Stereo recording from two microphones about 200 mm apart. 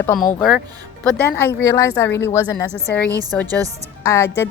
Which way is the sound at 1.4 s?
10° left (ahead or behind).